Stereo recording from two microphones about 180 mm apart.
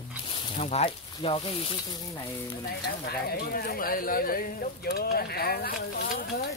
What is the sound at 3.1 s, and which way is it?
Speech, 60° left (ahead or behind).